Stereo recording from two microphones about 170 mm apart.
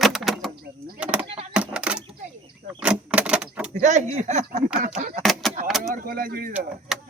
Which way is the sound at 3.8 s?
45° right (ahead or behind).